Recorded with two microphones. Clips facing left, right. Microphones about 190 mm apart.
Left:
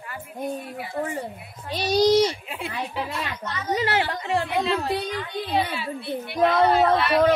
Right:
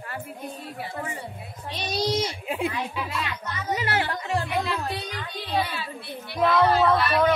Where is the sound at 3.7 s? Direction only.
25° left (ahead or behind).